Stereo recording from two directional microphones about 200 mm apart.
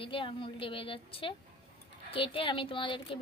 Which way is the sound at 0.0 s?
25° left (ahead or behind).